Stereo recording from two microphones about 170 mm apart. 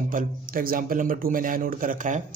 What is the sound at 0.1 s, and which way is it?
Speech, 55° right (ahead or behind).